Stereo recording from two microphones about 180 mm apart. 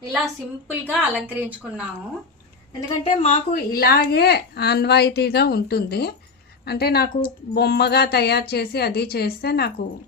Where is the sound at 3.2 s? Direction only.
40° left (ahead or behind).